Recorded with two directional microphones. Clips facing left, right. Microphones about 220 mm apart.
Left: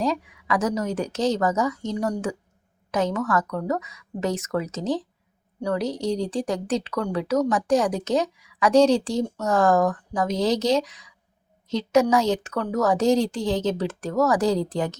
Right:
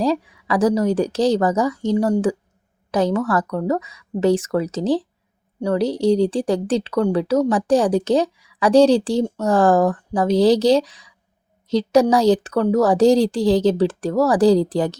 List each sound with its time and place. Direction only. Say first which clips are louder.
0.0 s speech: right 5 dB; 35° right (ahead or behind)